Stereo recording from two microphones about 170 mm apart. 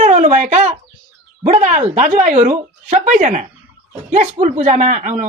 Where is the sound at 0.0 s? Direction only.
45° right (ahead or behind).